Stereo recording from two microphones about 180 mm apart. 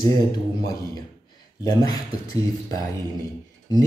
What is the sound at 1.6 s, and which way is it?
Speech, 20° left (ahead or behind).